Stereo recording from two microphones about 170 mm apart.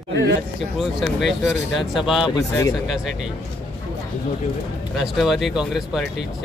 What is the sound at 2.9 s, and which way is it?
Speech, centre (ahead or behind).